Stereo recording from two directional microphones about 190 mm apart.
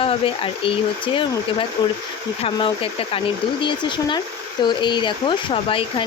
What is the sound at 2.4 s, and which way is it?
Speech, 30° left (ahead or behind).